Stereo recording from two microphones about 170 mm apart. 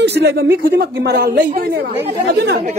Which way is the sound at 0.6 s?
60° right (ahead or behind).